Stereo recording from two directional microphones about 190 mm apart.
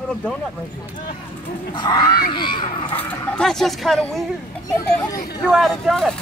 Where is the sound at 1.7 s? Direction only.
25° left (ahead or behind).